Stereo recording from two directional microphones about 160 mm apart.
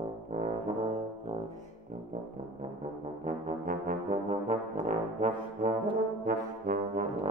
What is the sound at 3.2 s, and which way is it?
Brass instrument, 50° right (ahead or behind).